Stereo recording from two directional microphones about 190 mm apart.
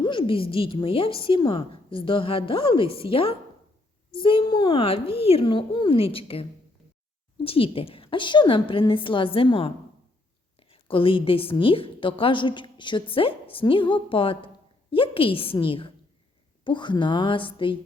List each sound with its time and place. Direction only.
0.0 s a woman's voice: 25° left (ahead or behind)